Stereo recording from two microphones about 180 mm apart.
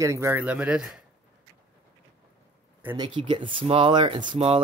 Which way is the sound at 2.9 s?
25° right (ahead or behind).